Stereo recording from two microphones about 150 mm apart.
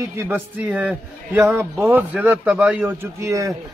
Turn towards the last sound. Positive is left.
turn(degrees=-20)  # may be behind; listen again after turning